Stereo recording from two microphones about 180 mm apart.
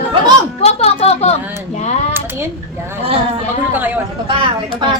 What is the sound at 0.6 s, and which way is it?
A woman's voice, 35° left (ahead or behind).